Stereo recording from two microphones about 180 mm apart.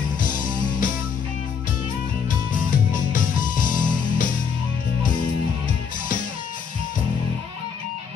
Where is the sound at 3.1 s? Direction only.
50° left (ahead or behind).